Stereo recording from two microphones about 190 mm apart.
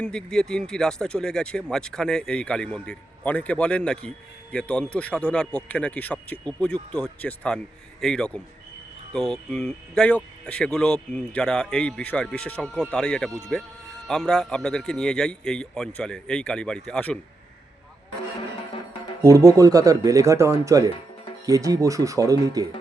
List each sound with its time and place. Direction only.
0.0 s speech: 5° left (ahead or behind)
19.2 s speech: 20° right (ahead or behind)